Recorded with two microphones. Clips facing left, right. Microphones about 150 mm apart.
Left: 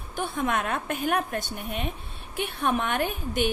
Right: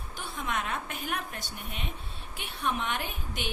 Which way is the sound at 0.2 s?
55° left (ahead or behind).